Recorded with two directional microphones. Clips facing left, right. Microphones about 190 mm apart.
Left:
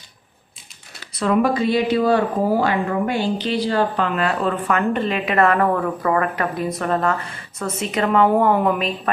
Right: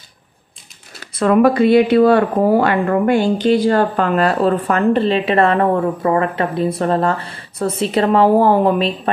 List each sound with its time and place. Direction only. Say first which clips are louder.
1.1 s speech: right 6 dB; 55° right (ahead or behind); by 9.1 s 30° right (ahead or behind)